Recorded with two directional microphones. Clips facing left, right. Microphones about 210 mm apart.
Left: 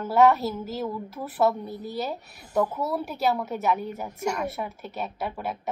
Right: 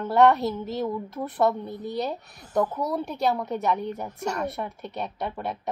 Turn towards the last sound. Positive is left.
turn(degrees=5)  # may be behind; listen again after turning